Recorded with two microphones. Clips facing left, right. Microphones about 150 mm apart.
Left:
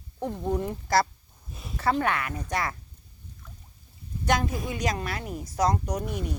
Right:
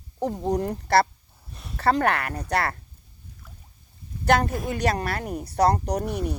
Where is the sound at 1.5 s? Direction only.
Centre (ahead or behind).